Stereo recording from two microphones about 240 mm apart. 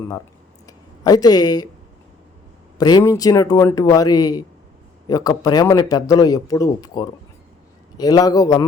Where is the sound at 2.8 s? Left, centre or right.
Centre.